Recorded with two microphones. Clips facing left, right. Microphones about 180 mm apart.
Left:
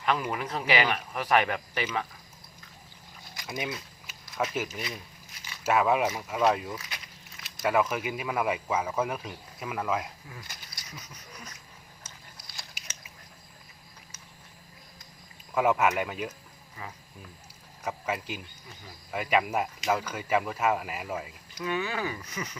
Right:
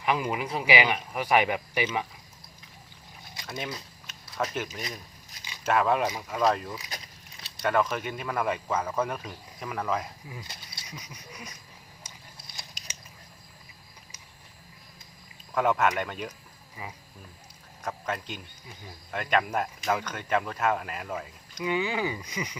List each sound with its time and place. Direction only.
0.0 s speech: 10° right (ahead or behind)
3.4 s speech: 5° left (ahead or behind)
4.1 s a sound: 10° left (ahead or behind)
4.5 s speech: 5° left (ahead or behind)
5.3 s biting: 40° right (ahead or behind)
5.6 s speech: 5° left (ahead or behind)
10.4 s a sound: 25° right (ahead or behind)
11.0 s speech: 10° right (ahead or behind)
12.4 s biting: 20° right (ahead or behind)
15.5 s speech: 5° left (ahead or behind)
16.8 s speech: 15° right (ahead or behind)
17.8 s speech: 10° left (ahead or behind)
21.6 s speech: 15° right (ahead or behind)